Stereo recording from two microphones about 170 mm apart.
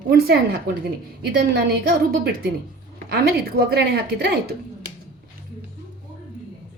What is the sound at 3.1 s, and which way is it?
A woman's voice, 65° right (ahead or behind).